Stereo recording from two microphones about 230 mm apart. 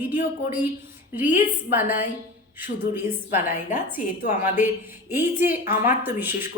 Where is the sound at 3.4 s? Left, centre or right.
Left.